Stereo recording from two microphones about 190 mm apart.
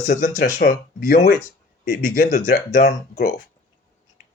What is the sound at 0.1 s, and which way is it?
Speech, 45° left (ahead or behind).